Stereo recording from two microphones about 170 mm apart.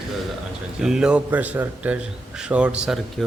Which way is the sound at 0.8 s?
5° right (ahead or behind).